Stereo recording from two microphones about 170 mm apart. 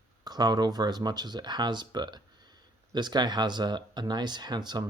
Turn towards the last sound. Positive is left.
turn(degrees=-25)  # may be behind; listen again after turning